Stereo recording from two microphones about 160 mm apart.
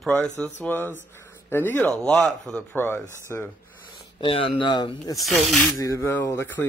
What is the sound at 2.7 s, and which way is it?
Speech, 15° left (ahead or behind).